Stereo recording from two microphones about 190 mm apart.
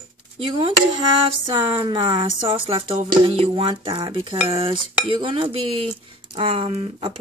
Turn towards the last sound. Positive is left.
turn(degrees=-30)  # may be behind; listen again after turning